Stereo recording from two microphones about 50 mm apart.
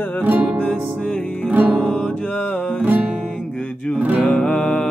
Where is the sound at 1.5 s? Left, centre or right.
Right.